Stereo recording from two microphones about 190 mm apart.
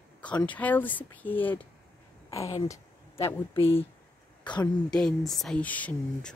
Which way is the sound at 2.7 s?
15° left (ahead or behind).